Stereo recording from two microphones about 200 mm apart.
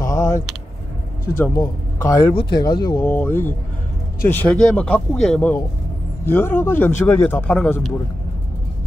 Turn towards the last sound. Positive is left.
turn(degrees=5)  # may be behind; listen again after turning